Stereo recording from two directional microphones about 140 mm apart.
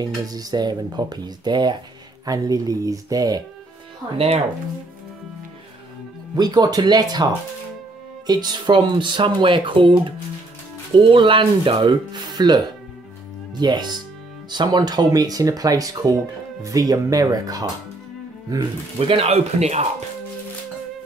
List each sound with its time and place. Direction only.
0.0 s speech: 30° right (ahead or behind)
6.3 s speech: 30° right (ahead or behind)
8.3 s speech: 30° right (ahead or behind)
18.9 s speech: 45° right (ahead or behind)